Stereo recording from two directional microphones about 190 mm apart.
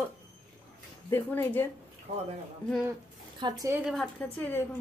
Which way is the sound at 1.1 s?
10° left (ahead or behind).